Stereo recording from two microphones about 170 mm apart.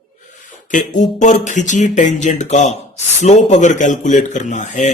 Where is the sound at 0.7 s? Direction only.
45° left (ahead or behind).